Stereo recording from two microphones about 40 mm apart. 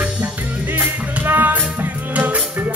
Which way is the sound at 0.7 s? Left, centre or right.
Right.